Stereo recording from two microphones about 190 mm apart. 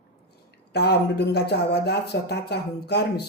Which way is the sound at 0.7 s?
60° left (ahead or behind).